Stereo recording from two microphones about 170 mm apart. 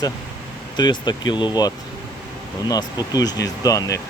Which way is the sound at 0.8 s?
25° left (ahead or behind).